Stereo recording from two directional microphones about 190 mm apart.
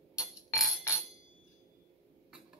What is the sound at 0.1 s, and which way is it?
Music, 15° left (ahead or behind).